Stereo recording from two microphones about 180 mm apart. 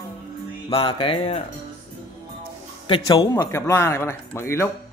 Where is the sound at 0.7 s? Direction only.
30° left (ahead or behind).